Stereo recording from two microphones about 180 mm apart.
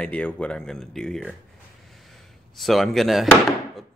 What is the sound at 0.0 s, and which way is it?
Speech, 5° left (ahead or behind).